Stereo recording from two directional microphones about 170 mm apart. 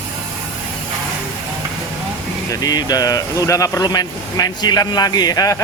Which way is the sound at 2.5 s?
20° left (ahead or behind).